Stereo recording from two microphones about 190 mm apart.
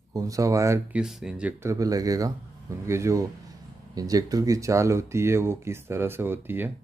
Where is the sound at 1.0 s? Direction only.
Centre (ahead or behind).